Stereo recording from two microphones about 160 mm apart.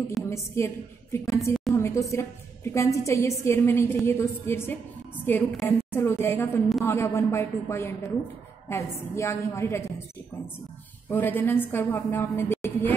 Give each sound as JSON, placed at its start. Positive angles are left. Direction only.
{"t": 0.2, "sound": "a sound", "side_deg": 0}
{"t": 0.6, "sound": "a woman's voice", "side_deg": 15}
{"t": 1.1, "sound": "music", "side_deg": 20}
{"t": 1.7, "sound": "a woman's voice", "side_deg": 20}
{"t": 11.1, "sound": "a woman's voice", "side_deg": 10}